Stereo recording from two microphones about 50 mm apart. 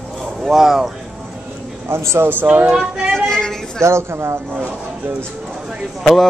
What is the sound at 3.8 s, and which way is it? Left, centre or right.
Speech, right.